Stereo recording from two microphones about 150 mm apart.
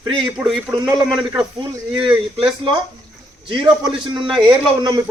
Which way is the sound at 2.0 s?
35° right (ahead or behind).